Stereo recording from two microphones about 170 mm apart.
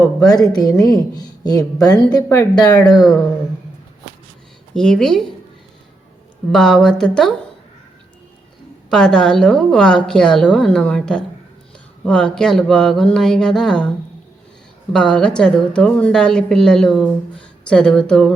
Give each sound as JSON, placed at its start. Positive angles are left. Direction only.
{"t": 0.2, "sound": "speech", "side_deg": 20}
{"t": 2.8, "sound": "a woman's voice", "side_deg": 0}
{"t": 4.7, "sound": "a woman's voice", "side_deg": 5}
{"t": 6.5, "sound": "a woman's voice", "side_deg": 0}
{"t": 8.9, "sound": "a woman's voice", "side_deg": 5}
{"t": 14.9, "sound": "a woman's voice", "side_deg": 5}